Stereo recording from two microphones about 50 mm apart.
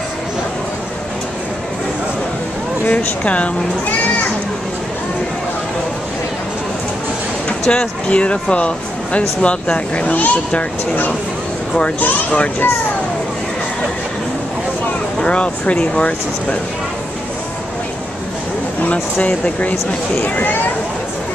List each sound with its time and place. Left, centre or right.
2.9 s speech: left
7.4 s a sound: centre
8.1 s a child's voice: left
15.2 s speech: left
18.9 s a child's voice: left